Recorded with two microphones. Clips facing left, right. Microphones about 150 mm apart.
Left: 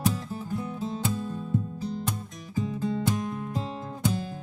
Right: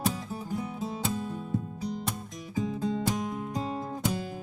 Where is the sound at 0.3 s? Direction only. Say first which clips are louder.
Left 1 dB; 15° right (ahead or behind).